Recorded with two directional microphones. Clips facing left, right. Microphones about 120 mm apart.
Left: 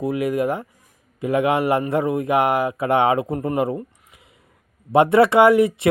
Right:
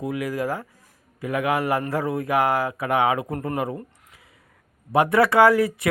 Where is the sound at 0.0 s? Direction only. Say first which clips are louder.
Left 5 dB; 25° left (ahead or behind).